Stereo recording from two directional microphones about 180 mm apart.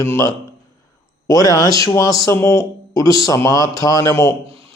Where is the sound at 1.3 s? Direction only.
20° left (ahead or behind).